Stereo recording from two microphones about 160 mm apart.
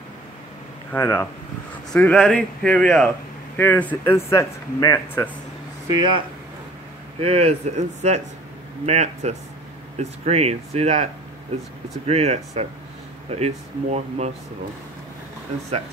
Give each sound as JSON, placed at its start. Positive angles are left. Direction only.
{"t": 0.9, "sound": "speech", "side_deg": 15}
{"t": 1.9, "sound": "a man's voice", "side_deg": 5}
{"t": 3.5, "sound": "speech", "side_deg": 15}
{"t": 5.9, "sound": "speech", "side_deg": -30}
{"t": 7.2, "sound": "speech", "side_deg": -40}
{"t": 12.1, "sound": "speech", "side_deg": -40}